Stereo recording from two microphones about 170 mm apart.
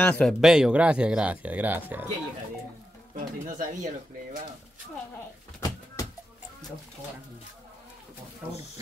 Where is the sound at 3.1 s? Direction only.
50° right (ahead or behind).